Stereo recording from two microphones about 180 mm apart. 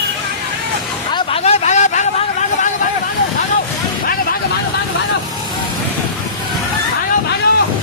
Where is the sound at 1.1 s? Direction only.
30° left (ahead or behind).